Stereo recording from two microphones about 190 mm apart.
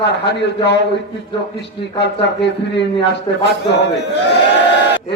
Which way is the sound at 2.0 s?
65° left (ahead or behind).